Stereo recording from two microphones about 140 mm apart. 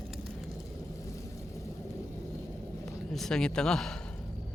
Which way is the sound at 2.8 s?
Centre (ahead or behind).